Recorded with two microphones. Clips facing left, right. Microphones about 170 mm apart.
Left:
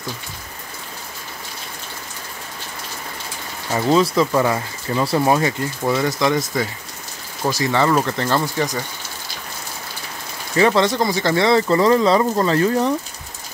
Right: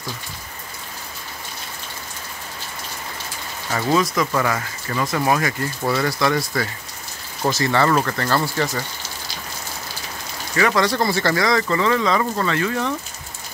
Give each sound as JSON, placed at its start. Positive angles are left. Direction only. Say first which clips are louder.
{"t": 3.7, "sound": "speech", "louder": "left 3 dB", "side_deg": 30}
{"t": 10.5, "sound": "speech", "louder": "left 3 dB", "side_deg": 25}
{"t": 11.4, "sound": "speech", "louder": "left 8 dB", "side_deg": 30}